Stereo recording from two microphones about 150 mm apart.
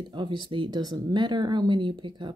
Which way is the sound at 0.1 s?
30° right (ahead or behind).